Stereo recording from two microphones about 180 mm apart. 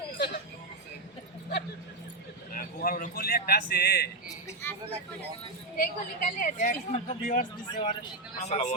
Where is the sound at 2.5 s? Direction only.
50° left (ahead or behind).